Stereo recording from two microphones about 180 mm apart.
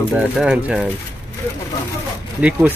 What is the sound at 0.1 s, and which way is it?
Speech, 5° right (ahead or behind).